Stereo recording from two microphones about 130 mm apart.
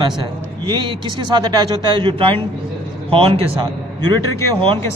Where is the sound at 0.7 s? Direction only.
35° right (ahead or behind).